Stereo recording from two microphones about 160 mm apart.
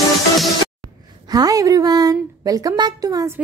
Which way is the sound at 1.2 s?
25° right (ahead or behind).